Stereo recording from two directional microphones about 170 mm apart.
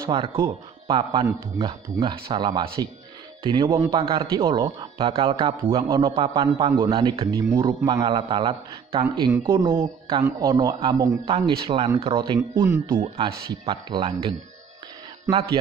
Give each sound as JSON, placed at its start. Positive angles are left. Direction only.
{"t": 0.0, "sound": "a man's voice", "side_deg": -30}
{"t": 7.2, "sound": "a man's voice", "side_deg": -20}
{"t": 9.0, "sound": "a man's voice", "side_deg": -20}
{"t": 13.0, "sound": "a man's voice", "side_deg": -30}